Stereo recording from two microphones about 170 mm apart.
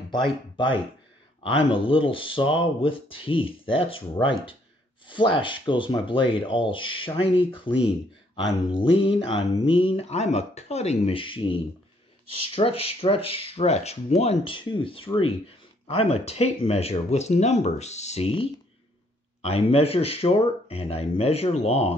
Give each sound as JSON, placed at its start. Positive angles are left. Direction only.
{"t": 0.1, "sound": "speech", "side_deg": 30}
{"t": 8.7, "sound": "speech", "side_deg": 30}